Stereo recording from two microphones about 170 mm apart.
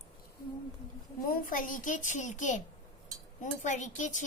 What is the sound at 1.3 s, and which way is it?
Child singing, 55° left (ahead or behind).